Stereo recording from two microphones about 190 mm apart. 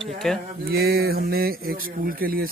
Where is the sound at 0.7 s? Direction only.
55° right (ahead or behind).